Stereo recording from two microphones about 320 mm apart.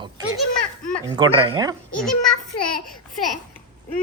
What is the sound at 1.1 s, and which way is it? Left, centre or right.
Speech, centre.